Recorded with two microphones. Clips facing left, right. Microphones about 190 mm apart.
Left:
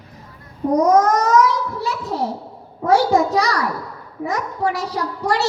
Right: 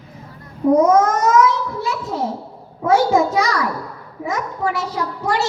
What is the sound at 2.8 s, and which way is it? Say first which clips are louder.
A child's voice: even; 35° left (ahead or behind).